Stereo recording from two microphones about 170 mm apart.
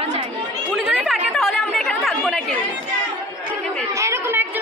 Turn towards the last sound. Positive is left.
turn(degrees=-15)  # may be behind; listen again after turning